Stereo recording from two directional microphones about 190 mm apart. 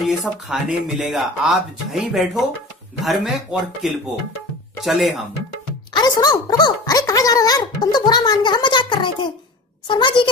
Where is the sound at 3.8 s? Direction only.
Centre (ahead or behind).